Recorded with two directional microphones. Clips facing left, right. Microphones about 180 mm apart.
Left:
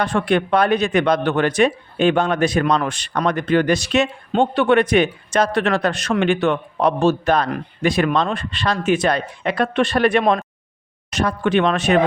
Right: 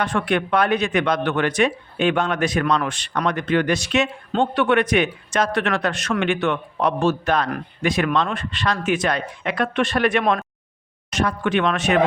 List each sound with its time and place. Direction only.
0.0 s a man's voice: 30° left (ahead or behind)